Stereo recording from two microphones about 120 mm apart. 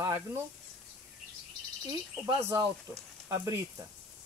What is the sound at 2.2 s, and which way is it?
Speech, 20° right (ahead or behind).